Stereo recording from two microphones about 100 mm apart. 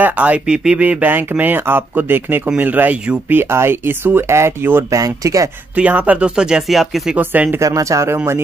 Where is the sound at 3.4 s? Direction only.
25° right (ahead or behind).